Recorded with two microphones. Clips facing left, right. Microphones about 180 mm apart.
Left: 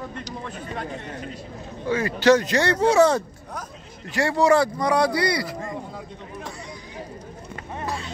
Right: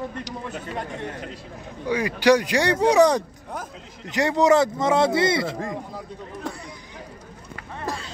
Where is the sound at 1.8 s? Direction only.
15° right (ahead or behind).